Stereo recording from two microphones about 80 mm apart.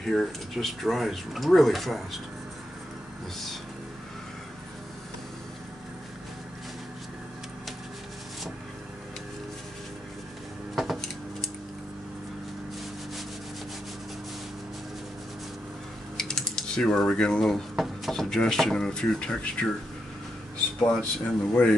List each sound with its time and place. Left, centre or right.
0.0 s speech: centre
10.8 s a sound: centre
16.2 s speech: centre
20.9 s speech: centre